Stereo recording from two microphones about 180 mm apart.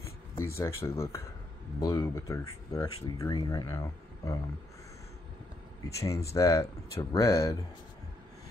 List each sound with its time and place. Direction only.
0.6 s speech: 15° left (ahead or behind)
5.9 s speech: 15° left (ahead or behind)